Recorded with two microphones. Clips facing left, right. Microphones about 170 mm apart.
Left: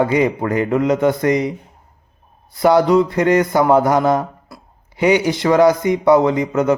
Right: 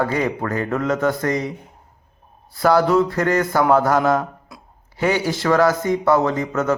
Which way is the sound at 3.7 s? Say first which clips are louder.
Left 2 dB; 20° left (ahead or behind).